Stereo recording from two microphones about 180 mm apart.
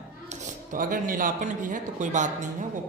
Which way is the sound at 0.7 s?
50° right (ahead or behind).